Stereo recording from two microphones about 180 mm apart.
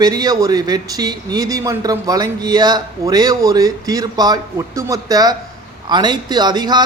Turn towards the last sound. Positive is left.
turn(degrees=-25)  # may be behind; listen again after turning